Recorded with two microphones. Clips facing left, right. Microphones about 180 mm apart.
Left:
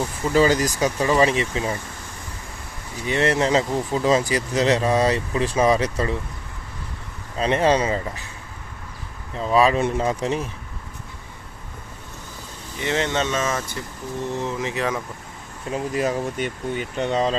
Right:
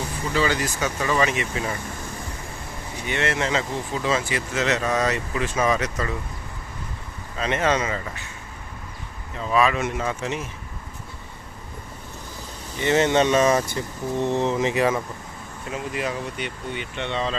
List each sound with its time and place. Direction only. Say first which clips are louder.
0.3 s speech: left 6 dB; 40° left (ahead or behind)
3.1 s speech: left 5 dB; 35° left (ahead or behind)
7.3 s speech: left 4 dB; 35° left (ahead or behind)
9.4 s speech: left 3 dB; 35° left (ahead or behind)
12.8 s speech: right 4 dB; 5° right (ahead or behind); by 14.8 s 20° right (ahead or behind)
14.8 s speech: right 2 dB; 5° right (ahead or behind)
15.7 s speech: left 5 dB; 40° left (ahead or behind)